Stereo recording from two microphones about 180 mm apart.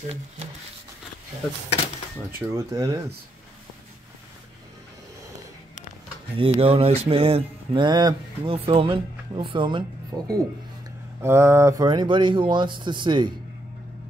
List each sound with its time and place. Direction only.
2.5 s speech: 20° right (ahead or behind)
6.3 s mantra: 30° right (ahead or behind)